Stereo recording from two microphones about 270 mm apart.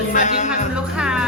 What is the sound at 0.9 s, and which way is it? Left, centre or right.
Music, centre.